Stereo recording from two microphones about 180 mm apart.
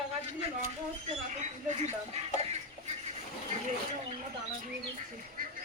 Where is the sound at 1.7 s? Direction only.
35° right (ahead or behind).